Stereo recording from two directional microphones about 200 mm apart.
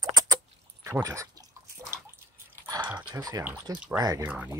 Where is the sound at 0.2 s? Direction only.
20° right (ahead or behind).